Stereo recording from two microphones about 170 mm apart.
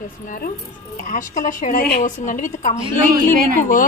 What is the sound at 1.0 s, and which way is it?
A woman's voice, 50° left (ahead or behind).